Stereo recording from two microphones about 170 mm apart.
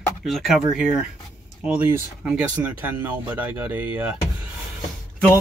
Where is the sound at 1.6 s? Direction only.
5° right (ahead or behind).